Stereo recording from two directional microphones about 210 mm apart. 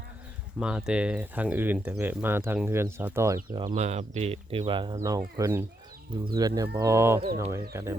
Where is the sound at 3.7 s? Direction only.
30° right (ahead or behind).